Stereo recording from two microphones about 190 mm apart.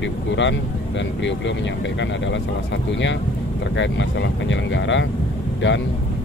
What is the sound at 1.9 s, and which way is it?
Speech, 75° left (ahead or behind).